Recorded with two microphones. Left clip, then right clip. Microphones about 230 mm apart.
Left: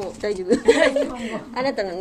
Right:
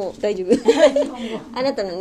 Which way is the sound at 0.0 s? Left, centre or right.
Centre.